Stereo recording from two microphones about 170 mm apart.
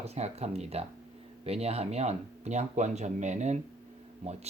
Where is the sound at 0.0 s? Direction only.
40° right (ahead or behind).